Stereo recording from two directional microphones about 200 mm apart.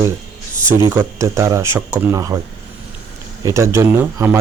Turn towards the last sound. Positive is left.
turn(degrees=-10)  # may be behind; listen again after turning